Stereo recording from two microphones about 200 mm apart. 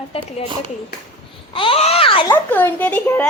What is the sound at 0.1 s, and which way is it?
Speech, 30° left (ahead or behind).